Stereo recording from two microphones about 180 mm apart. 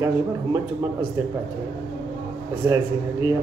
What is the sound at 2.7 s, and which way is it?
Speech, 20° right (ahead or behind).